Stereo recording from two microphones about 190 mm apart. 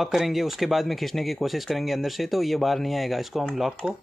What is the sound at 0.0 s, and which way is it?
Speech, centre (ahead or behind).